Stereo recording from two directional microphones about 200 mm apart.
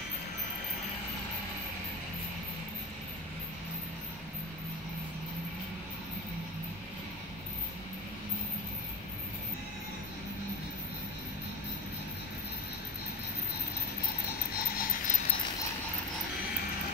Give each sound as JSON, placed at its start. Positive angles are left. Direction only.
{"t": 14.5, "sound": "insect", "side_deg": 45}